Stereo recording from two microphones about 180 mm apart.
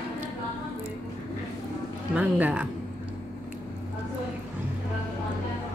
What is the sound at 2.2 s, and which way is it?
Speech, 10° right (ahead or behind).